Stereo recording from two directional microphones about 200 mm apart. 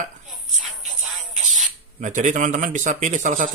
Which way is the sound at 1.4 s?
Centre (ahead or behind).